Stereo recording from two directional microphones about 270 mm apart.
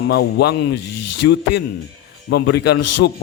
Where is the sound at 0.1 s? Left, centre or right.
Left.